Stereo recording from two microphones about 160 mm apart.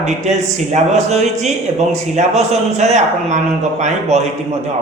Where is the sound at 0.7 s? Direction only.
45° right (ahead or behind).